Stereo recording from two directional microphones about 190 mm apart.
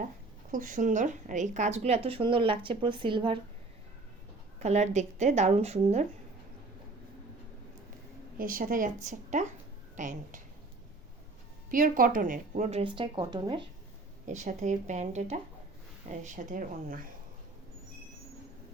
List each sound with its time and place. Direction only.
0.5 s a woman's voice: 45° right (ahead or behind); by 3.3 s 25° right (ahead or behind)
4.6 s a woman's voice: 35° right (ahead or behind)
8.4 s a woman's voice: 50° right (ahead or behind)
11.7 s a woman's voice: 45° right (ahead or behind); by 13.7 s 25° right (ahead or behind)
14.3 s a woman's voice: 40° right (ahead or behind)